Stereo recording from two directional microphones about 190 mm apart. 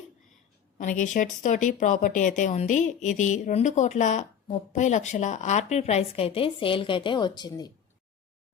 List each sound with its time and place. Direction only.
0.8 s speech: 40° left (ahead or behind); by 7.7 s 20° left (ahead or behind)